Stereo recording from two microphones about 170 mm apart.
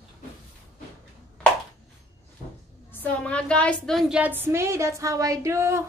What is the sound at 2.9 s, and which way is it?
A woman's voice, 10° left (ahead or behind).